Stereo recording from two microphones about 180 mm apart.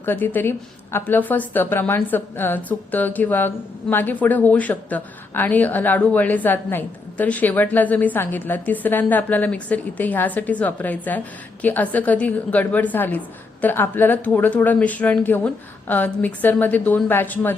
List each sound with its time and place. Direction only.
0.0 s a woman's voice: 10° left (ahead or behind)